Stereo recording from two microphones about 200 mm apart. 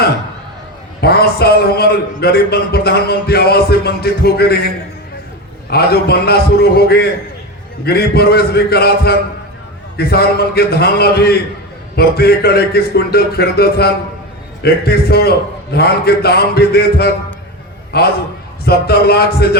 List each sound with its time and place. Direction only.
1.0 s a man's voice: 50° left (ahead or behind)
5.7 s a man's voice: 50° left (ahead or behind)